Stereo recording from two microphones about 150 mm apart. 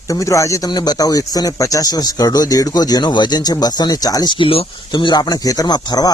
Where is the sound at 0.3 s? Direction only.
20° left (ahead or behind).